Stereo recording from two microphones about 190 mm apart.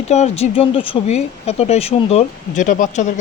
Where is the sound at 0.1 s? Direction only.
35° left (ahead or behind).